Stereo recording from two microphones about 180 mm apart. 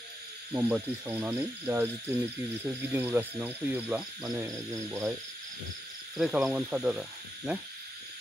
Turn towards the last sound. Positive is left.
turn(degrees=-5)  # may be behind; listen again after turning